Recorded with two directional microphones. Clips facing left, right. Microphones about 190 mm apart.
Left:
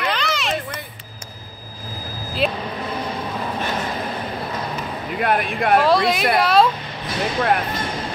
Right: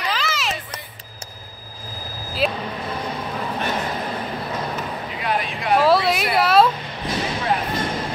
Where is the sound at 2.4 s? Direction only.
Centre (ahead or behind).